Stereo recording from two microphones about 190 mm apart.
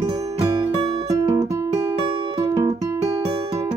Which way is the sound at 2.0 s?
30° right (ahead or behind).